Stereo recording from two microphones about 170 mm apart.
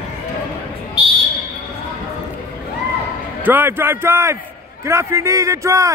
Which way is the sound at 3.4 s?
10° right (ahead or behind).